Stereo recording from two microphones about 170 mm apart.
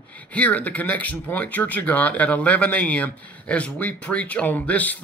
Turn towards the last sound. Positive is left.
turn(degrees=10)  # may be behind; listen again after turning